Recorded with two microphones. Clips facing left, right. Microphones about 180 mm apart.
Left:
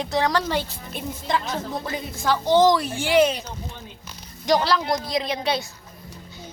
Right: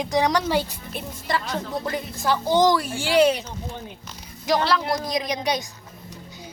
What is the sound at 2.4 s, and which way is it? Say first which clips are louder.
Speech: left 2 dB; 10° right (ahead or behind).